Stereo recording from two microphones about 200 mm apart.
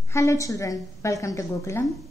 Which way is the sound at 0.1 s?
15° left (ahead or behind).